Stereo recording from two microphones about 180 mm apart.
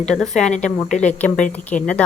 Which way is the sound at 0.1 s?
5° left (ahead or behind).